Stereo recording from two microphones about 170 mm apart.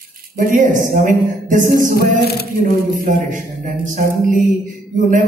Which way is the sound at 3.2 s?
50° right (ahead or behind).